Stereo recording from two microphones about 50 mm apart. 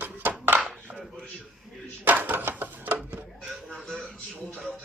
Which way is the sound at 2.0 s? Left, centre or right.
Right.